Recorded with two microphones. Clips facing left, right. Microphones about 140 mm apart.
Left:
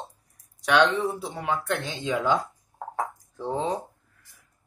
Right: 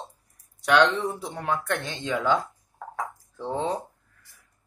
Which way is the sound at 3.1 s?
15° left (ahead or behind).